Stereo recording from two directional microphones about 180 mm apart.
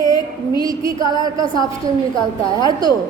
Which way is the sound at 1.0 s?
20° right (ahead or behind).